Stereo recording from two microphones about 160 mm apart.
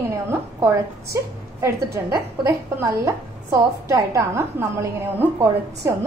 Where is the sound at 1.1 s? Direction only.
15° right (ahead or behind).